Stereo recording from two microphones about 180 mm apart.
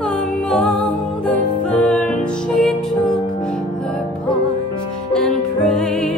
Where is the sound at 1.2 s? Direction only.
10° left (ahead or behind).